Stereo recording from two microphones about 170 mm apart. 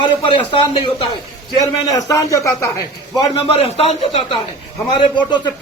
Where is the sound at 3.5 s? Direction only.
35° left (ahead or behind).